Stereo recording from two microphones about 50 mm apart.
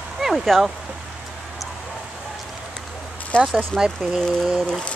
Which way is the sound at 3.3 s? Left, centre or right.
Left.